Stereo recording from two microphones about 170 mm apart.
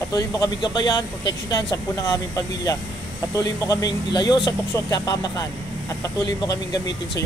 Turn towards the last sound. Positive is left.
turn(degrees=20)  # may be behind; listen again after turning